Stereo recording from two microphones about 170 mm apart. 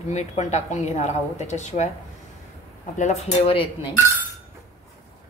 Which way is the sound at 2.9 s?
40° left (ahead or behind).